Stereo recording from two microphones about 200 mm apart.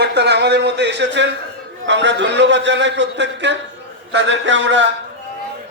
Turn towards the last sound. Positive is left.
turn(degrees=-65)  # may be behind; listen again after turning